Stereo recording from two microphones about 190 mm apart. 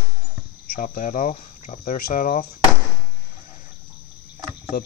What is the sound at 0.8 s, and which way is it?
Speech, 40° left (ahead or behind).